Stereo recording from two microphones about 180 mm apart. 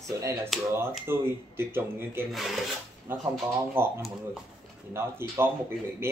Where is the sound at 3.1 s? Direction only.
10° right (ahead or behind).